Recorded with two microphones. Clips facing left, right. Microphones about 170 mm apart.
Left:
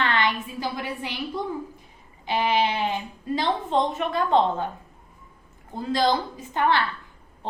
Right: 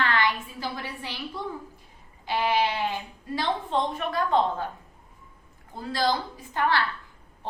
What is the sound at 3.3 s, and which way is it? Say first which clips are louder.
A woman's voice: left 3 dB; 20° left (ahead or behind).